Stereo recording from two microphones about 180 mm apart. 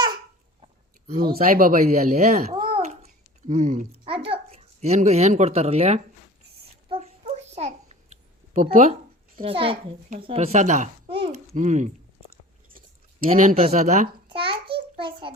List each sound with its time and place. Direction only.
1.1 s a child's voice: 55° right (ahead or behind)
2.7 s babbling: 40° right (ahead or behind)
4.0 s a child's voice: 30° right (ahead or behind)
6.8 s a sound: 35° right (ahead or behind)
8.5 s speech: 40° right (ahead or behind)
11.1 s babbling: 30° right (ahead or behind)
11.5 s speech: 40° right (ahead or behind)
13.2 s speech: 50° right (ahead or behind)
14.3 s a sound: 30° right (ahead or behind)